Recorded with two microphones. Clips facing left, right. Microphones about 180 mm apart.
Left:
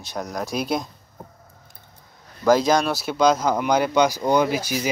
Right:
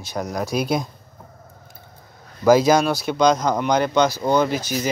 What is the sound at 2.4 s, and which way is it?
Speech, 5° right (ahead or behind).